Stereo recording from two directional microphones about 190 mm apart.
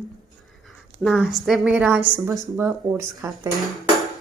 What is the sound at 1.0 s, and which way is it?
Speech, centre (ahead or behind).